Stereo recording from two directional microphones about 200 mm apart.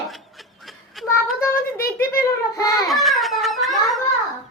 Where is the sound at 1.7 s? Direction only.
45° left (ahead or behind).